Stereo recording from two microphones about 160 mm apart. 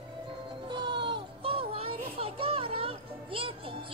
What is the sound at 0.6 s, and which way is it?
Children playing, 30° right (ahead or behind).